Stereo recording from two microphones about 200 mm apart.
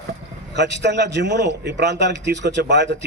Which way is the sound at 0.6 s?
60° right (ahead or behind).